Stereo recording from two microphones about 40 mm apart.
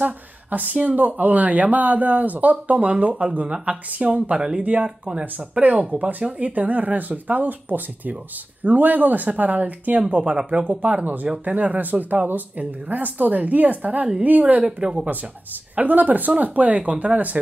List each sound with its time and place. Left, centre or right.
0.0 s speech: right
4.4 s speech: centre
5.6 s speech: right
10.0 s speech: right
14.6 s speech: right
15.7 s speech: right